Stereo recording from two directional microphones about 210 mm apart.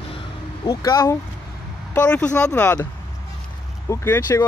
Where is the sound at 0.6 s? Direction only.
15° left (ahead or behind).